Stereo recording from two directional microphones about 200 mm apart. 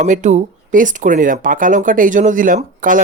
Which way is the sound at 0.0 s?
40° right (ahead or behind).